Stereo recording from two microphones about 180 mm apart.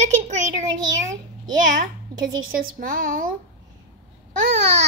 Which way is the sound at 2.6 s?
50° right (ahead or behind).